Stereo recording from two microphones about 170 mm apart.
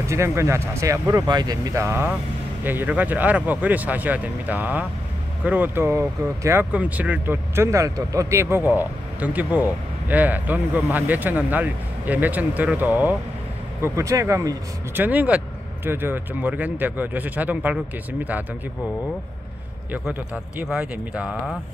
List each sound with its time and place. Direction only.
0.0 s speech: 15° right (ahead or behind)
19.9 s speech: 10° right (ahead or behind)